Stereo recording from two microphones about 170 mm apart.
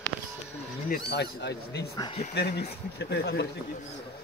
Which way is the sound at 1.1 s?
80° left.